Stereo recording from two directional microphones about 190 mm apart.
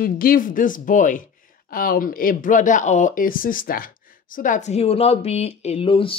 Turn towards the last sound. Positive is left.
turn(degrees=30)  # may be behind; listen again after turning